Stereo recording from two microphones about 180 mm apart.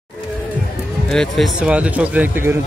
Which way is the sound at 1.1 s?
Centre (ahead or behind).